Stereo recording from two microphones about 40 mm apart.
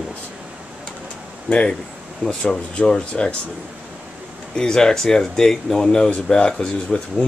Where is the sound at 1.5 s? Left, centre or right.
Left.